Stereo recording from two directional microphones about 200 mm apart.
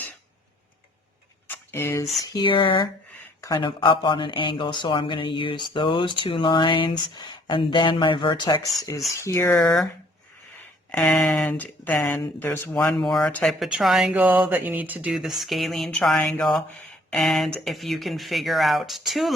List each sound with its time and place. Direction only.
1.5 s a sound: 15° left (ahead or behind)
2.2 s speech: 20° left (ahead or behind)
9.6 s speech: centre (ahead or behind)
10.9 s speech: 5° left (ahead or behind)